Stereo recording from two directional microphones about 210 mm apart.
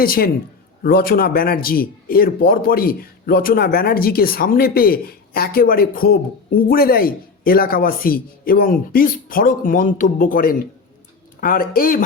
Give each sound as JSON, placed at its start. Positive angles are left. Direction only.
{"t": 0.0, "sound": "a man's voice", "side_deg": 45}